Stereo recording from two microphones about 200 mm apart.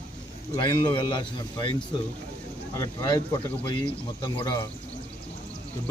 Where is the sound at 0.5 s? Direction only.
20° left (ahead or behind).